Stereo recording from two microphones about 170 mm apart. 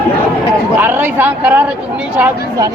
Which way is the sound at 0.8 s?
10° right (ahead or behind).